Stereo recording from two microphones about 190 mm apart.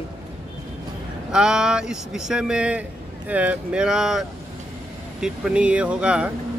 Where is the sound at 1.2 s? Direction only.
5° right (ahead or behind).